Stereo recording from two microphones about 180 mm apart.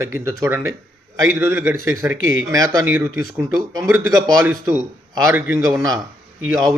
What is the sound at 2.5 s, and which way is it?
A man's voice, 20° right (ahead or behind).